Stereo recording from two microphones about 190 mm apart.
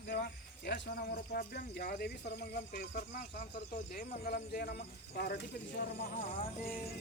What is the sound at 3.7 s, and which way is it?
Speech, 45° left (ahead or behind).